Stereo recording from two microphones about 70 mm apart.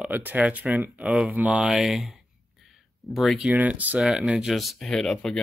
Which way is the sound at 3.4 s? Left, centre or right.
Right.